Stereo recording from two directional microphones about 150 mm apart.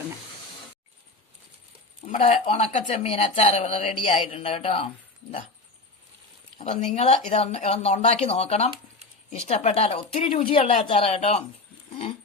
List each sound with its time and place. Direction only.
2.0 s speech: 50° left (ahead or behind)
6.6 s a woman's voice: 50° left (ahead or behind)